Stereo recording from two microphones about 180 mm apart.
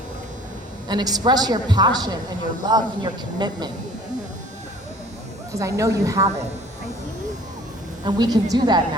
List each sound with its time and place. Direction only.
0.9 s a woman's voice: 20° right (ahead or behind)
5.5 s a woman's voice: 15° right (ahead or behind)
8.0 s a woman's voice: 20° right (ahead or behind)